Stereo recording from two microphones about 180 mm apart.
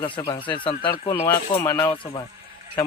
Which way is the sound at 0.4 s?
30° left (ahead or behind).